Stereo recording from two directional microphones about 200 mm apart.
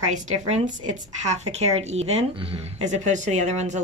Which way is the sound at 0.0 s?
35° right (ahead or behind).